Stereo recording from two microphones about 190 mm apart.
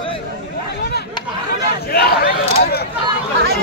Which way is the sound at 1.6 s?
60° left (ahead or behind).